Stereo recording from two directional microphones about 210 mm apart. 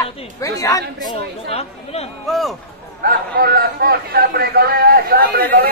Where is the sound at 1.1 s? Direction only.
30° left (ahead or behind).